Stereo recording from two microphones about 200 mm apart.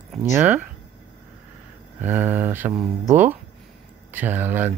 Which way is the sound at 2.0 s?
10° right (ahead or behind).